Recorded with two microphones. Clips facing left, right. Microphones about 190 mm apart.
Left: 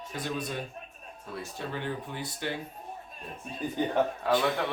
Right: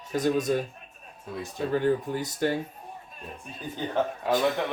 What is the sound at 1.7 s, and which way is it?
Speech, 40° right (ahead or behind).